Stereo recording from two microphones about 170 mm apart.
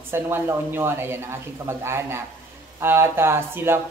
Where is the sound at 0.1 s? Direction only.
15° right (ahead or behind).